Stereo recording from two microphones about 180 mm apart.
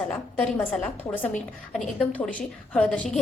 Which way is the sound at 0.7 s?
10° left (ahead or behind).